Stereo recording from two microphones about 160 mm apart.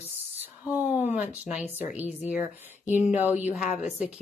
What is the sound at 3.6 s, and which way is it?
Speech, 65° left (ahead or behind).